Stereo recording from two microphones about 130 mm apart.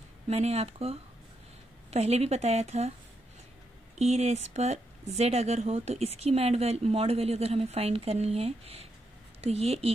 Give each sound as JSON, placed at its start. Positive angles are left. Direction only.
{"t": 0.3, "sound": "speech", "side_deg": -50}
{"t": 4.0, "sound": "speech", "side_deg": -55}